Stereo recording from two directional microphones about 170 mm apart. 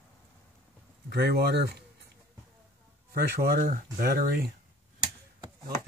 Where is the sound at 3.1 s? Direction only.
65° right (ahead or behind).